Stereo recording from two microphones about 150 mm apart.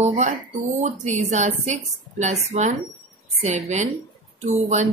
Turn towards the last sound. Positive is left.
turn(degrees=-50)  # may be behind; listen again after turning